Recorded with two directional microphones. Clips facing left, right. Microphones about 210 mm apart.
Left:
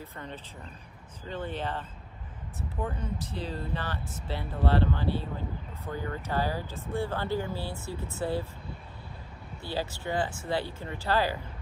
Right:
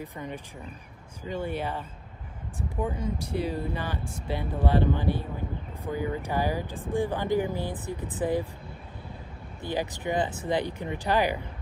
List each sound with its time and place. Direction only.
0.0 s speech: 15° right (ahead or behind)
9.6 s speech: 15° right (ahead or behind)